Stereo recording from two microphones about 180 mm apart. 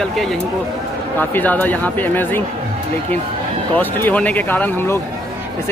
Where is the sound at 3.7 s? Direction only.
10° left (ahead or behind).